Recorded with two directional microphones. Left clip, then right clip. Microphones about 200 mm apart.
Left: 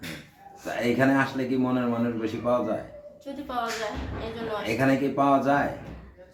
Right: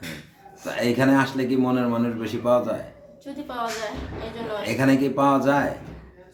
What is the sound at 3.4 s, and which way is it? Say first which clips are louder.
Speech: right 1 dB; centre (ahead or behind).